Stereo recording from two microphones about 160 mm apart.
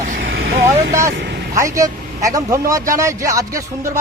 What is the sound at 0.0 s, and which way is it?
Vehicle, 55° right (ahead or behind).